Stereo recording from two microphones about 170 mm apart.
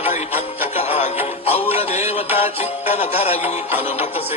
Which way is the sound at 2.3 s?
35° left (ahead or behind).